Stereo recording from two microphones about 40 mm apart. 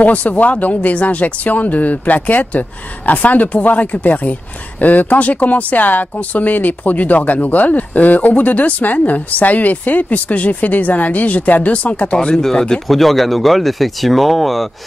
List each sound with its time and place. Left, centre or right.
0.0 s speech: left
12.4 s speech: centre
12.8 s speech: centre